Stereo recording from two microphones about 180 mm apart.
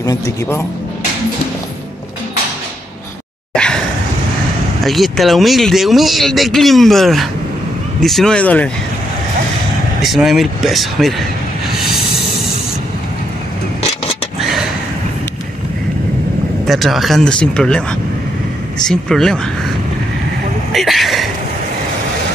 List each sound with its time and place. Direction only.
0.0 s speech: 20° left (ahead or behind)
3.5 s a sound: 5° left (ahead or behind)
4.8 s speech: centre (ahead or behind)
10.0 s speech: centre (ahead or behind)
16.6 s speech: centre (ahead or behind)
18.9 s speech: 5° left (ahead or behind)
20.7 s a sound: centre (ahead or behind)